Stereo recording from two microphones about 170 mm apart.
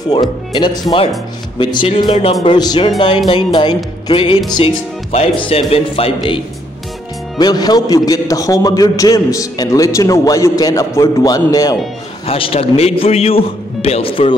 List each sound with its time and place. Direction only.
0.1 s a man's voice: 25° left (ahead or behind)
12.3 s a man's voice: 35° left (ahead or behind)